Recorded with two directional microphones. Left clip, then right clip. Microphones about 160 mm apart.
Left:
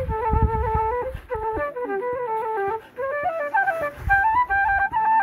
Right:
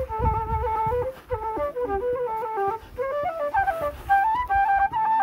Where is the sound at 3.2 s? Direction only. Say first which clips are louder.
Left 2 dB; 20° left (ahead or behind).